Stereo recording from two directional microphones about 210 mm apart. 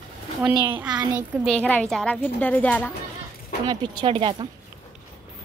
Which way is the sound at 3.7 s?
20° right (ahead or behind).